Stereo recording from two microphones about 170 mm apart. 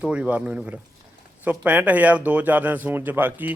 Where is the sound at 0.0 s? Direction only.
5° right (ahead or behind).